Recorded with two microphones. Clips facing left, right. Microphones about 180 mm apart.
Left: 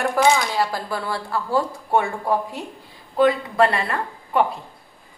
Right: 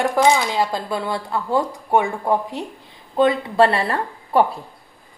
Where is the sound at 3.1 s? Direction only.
25° right (ahead or behind).